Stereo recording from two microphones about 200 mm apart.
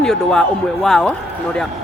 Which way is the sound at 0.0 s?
5° left (ahead or behind).